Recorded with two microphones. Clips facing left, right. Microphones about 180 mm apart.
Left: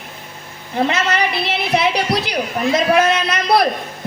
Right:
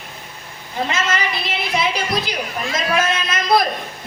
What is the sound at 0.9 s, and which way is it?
A woman's voice, 65° left (ahead or behind).